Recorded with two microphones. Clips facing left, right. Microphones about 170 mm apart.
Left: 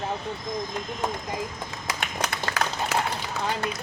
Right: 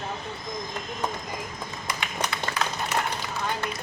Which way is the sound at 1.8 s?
90° left.